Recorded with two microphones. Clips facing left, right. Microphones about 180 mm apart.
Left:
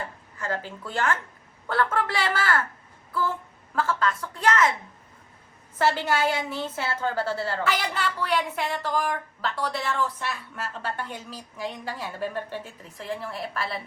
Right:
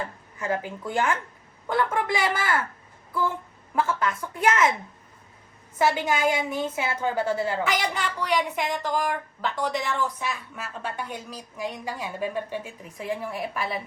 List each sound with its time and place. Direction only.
0.3 s a woman's voice: 15° right (ahead or behind)
3.8 s a woman's voice: 20° right (ahead or behind)
5.8 s a woman's voice: 10° right (ahead or behind)